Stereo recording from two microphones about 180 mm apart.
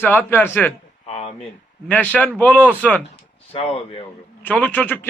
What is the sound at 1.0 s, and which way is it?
Speech, 35° left (ahead or behind).